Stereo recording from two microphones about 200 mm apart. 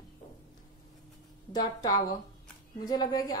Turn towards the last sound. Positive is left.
turn(degrees=20)  # may be behind; listen again after turning